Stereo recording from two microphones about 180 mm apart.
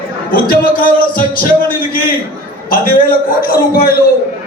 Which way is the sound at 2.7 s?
55° left (ahead or behind).